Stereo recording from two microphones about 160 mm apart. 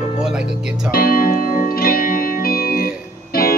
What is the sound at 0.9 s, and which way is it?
Music, 65° left (ahead or behind).